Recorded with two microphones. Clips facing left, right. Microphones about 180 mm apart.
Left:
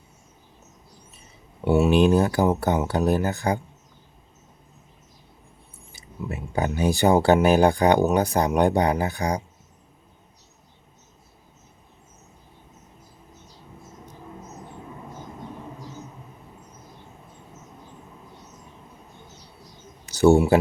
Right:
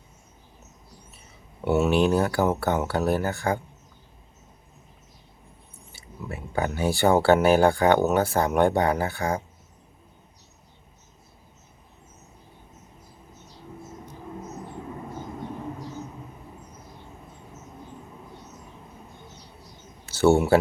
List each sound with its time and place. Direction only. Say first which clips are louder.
1.7 s speech: left 3 dB; 15° left (ahead or behind)
5.9 s speech: left 3 dB; 20° left (ahead or behind)
20.1 s speech: left 2 dB; 15° left (ahead or behind)